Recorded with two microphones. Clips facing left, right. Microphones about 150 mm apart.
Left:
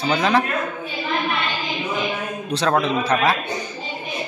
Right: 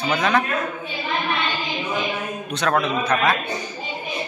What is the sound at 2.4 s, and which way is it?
Speech, 30° left (ahead or behind).